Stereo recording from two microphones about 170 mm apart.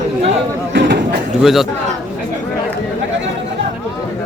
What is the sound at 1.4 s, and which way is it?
Speech, centre (ahead or behind).